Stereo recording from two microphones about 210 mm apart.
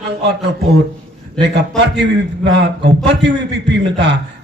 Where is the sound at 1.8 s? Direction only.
55° right (ahead or behind).